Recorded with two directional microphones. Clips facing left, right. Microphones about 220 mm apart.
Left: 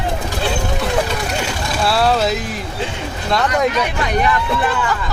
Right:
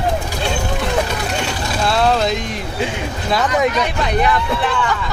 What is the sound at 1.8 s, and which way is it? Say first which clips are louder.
Vehicle: even; 5° left (ahead or behind).